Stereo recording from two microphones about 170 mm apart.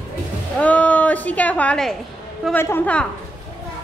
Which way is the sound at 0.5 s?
10° left (ahead or behind).